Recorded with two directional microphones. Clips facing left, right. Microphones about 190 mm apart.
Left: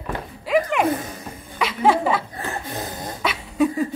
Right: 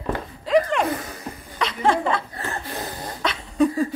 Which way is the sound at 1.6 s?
5° left (ahead or behind).